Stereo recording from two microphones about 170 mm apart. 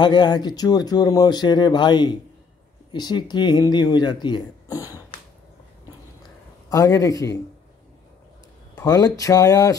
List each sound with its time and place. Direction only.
0.0 s speech: 25° left (ahead or behind)
6.7 s speech: 20° left (ahead or behind)
8.7 s speech: 20° left (ahead or behind)